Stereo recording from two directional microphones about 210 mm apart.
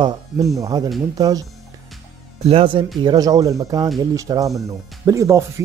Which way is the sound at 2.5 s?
25° right (ahead or behind).